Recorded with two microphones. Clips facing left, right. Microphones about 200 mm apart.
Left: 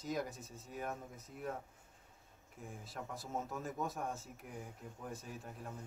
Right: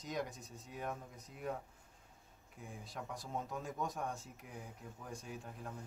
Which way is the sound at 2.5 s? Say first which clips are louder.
Even; centre (ahead or behind).